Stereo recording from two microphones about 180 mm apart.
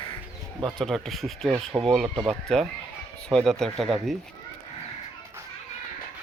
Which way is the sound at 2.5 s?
5° left (ahead or behind).